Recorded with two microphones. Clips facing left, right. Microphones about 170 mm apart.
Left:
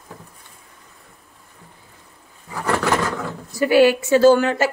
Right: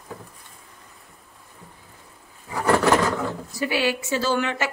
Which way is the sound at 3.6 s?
50° left (ahead or behind).